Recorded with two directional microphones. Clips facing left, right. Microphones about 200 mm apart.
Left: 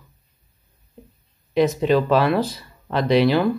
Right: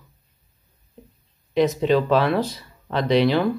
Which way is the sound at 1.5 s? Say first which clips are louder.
Left 1 dB; 5° left (ahead or behind).